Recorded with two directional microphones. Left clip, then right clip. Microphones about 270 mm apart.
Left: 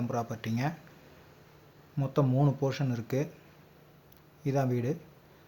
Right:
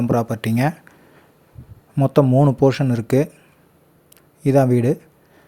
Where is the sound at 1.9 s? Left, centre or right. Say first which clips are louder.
Right 14 dB; right.